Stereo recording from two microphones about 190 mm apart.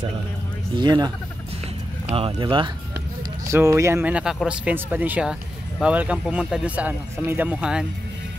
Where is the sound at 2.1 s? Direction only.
30° right (ahead or behind).